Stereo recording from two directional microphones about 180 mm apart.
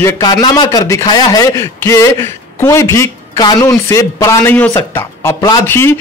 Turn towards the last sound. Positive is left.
turn(degrees=15)  # may be behind; listen again after turning